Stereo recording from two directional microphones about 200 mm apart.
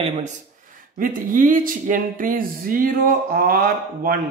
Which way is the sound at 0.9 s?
45° right (ahead or behind).